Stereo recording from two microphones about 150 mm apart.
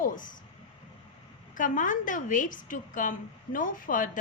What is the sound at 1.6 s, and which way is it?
A woman's voice, 60° left (ahead or behind).